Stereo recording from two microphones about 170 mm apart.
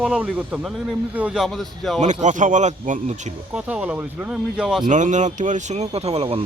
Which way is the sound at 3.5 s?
5° right (ahead or behind).